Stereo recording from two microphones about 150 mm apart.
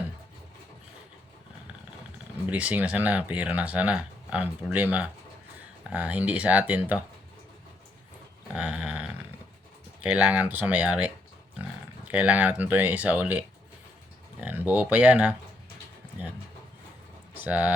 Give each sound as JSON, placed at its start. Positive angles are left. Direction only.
{"t": 2.5, "sound": "speech", "side_deg": -10}
{"t": 8.5, "sound": "dog", "side_deg": -5}
{"t": 10.0, "sound": "speech", "side_deg": -10}
{"t": 14.4, "sound": "speech", "side_deg": -15}
{"t": 17.4, "sound": "speech", "side_deg": -10}